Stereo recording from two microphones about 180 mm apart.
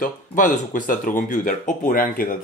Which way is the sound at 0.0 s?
50° left (ahead or behind).